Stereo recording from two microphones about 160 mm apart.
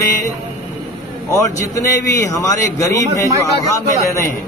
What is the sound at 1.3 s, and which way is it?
A man's voice, 20° left (ahead or behind).